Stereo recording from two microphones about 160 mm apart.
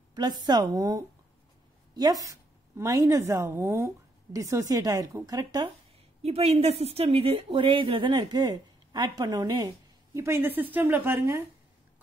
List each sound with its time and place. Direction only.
0.1 s a woman's voice: 25° right (ahead or behind)
6.2 s a woman's voice: 40° right (ahead or behind); by 11.4 s 15° right (ahead or behind)